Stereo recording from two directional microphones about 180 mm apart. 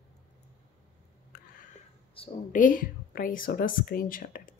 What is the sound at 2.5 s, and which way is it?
A woman's voice, 45° left (ahead or behind).